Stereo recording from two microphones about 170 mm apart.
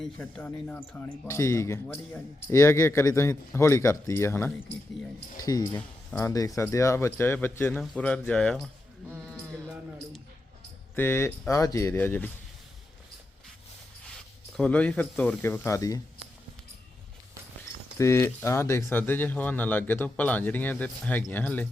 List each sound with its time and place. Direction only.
0.0 s speech: 10° left (ahead or behind)
10.9 s speech: 10° left (ahead or behind)
14.5 s speech: 5° left (ahead or behind)
17.9 s speech: 15° left (ahead or behind)